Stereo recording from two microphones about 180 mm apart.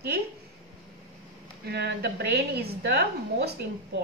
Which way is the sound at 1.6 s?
65° right (ahead or behind).